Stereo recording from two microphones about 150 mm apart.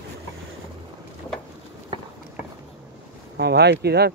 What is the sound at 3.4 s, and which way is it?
Speech, 90° right.